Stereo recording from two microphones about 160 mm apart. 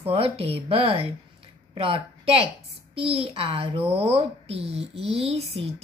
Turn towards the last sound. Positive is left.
turn(degrees=-40)  # may be behind; listen again after turning